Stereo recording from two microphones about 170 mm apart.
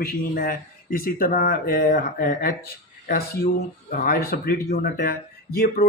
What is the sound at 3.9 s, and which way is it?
A man's voice, 60° left (ahead or behind).